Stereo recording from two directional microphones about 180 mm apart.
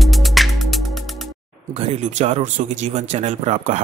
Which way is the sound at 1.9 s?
35° right (ahead or behind).